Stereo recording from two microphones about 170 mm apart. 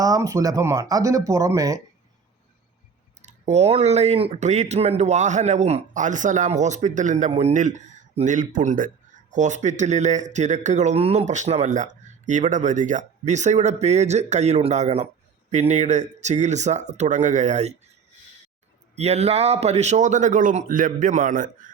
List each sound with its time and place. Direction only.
0.0 s speech: 20° right (ahead or behind)
3.2 s speech: 40° right (ahead or behind)
18.9 s speech: 40° right (ahead or behind)